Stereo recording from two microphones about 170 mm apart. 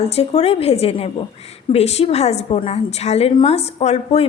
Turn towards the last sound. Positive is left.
turn(degrees=40)  # may be behind; listen again after turning